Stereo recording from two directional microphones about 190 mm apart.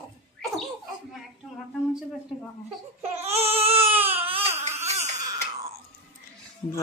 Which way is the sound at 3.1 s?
35° right (ahead or behind).